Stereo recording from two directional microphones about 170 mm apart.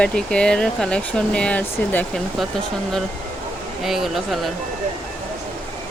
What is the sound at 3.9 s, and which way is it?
Speech, centre (ahead or behind).